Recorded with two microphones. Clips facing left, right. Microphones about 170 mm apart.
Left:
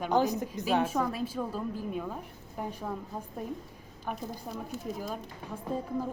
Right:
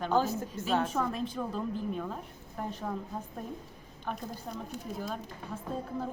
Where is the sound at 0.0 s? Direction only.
15° left (ahead or behind).